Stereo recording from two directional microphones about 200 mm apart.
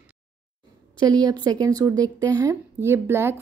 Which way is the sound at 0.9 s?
20° right (ahead or behind).